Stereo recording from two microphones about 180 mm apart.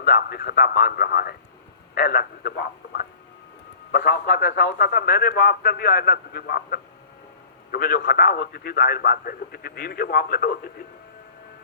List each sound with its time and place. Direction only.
0.0 s a man's voice: 55° left (ahead or behind)